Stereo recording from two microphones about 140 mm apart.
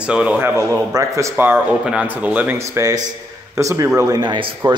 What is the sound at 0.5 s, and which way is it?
A man's voice, 20° right (ahead or behind).